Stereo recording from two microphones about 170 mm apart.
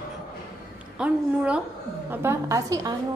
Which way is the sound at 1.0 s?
5° right (ahead or behind).